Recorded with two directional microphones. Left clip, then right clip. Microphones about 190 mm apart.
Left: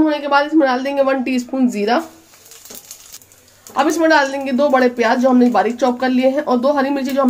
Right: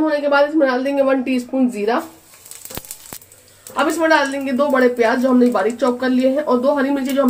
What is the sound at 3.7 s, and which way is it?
Speech, 40° left (ahead or behind).